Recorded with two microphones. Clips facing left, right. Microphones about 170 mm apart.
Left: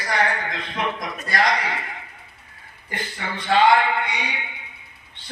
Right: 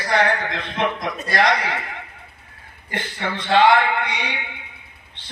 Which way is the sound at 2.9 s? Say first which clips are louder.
Right 4 dB; 70° right (ahead or behind).